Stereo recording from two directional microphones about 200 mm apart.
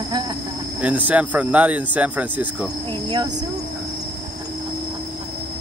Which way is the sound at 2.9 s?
20° right (ahead or behind).